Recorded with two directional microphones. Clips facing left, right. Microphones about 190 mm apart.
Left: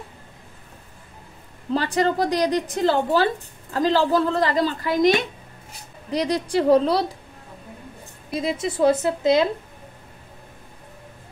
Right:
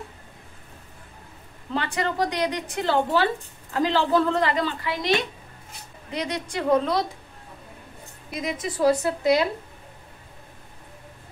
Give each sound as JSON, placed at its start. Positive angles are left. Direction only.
{"t": 1.7, "sound": "a woman's voice", "side_deg": 35}
{"t": 6.1, "sound": "a woman's voice", "side_deg": 35}
{"t": 8.3, "sound": "a woman's voice", "side_deg": 30}